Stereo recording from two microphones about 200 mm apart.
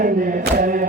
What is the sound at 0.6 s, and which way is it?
A capella, 45° right (ahead or behind).